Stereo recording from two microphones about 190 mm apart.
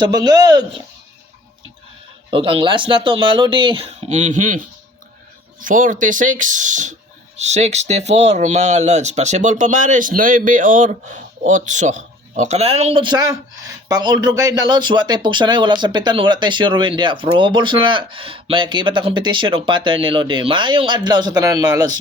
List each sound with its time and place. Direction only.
0.0 s speech: 20° right (ahead or behind)
2.3 s speech: 25° right (ahead or behind)